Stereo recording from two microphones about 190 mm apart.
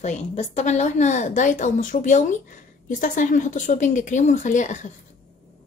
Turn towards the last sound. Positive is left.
turn(degrees=40)  # may be behind; listen again after turning